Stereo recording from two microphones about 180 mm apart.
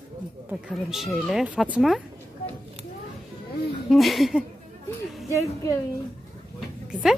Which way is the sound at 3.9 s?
Centre (ahead or behind).